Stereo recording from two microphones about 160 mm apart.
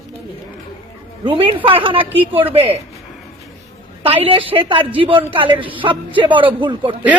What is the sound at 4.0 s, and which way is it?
Speech, 35° right (ahead or behind).